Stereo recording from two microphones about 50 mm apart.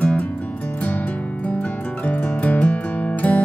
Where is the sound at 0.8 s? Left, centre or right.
Left.